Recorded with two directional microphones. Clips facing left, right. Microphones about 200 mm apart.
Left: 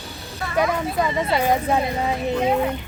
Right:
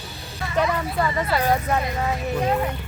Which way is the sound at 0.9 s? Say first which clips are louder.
Left 2 dB; 20° left (ahead or behind).